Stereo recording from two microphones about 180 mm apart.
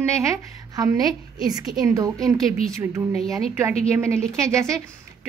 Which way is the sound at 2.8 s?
15° right (ahead or behind).